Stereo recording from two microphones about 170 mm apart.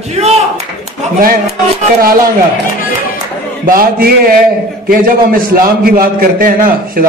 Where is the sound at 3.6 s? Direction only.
55° right (ahead or behind).